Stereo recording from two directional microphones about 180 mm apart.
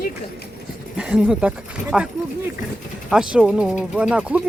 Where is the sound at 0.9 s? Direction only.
5° right (ahead or behind).